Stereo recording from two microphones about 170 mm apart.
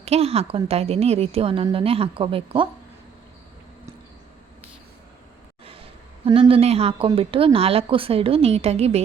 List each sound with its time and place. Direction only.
0.0 s a woman's voice: 35° right (ahead or behind)
5.6 s a woman's voice: 35° right (ahead or behind)